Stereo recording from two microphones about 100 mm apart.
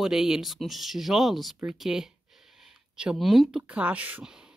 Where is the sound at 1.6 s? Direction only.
5° right (ahead or behind).